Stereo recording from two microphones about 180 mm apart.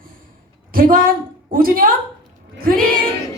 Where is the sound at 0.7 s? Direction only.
50° right (ahead or behind).